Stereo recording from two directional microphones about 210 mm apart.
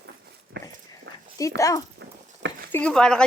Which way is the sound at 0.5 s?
55° right (ahead or behind).